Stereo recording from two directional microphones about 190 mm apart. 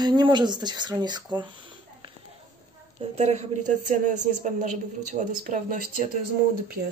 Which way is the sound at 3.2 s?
35° right (ahead or behind).